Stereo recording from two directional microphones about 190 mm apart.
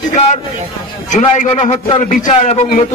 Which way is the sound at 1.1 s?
35° left (ahead or behind).